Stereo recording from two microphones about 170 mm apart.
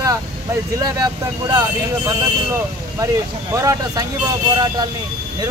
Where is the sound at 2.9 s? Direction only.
20° right (ahead or behind).